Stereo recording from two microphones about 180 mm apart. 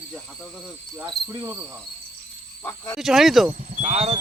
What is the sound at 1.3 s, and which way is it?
Cricket, 15° right (ahead or behind).